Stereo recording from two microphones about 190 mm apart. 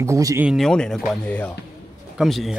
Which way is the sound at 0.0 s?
15° right (ahead or behind).